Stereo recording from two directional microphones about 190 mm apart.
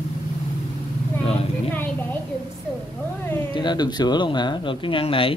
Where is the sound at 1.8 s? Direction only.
10° left (ahead or behind).